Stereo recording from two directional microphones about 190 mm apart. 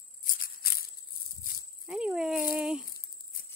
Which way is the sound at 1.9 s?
5° right (ahead or behind).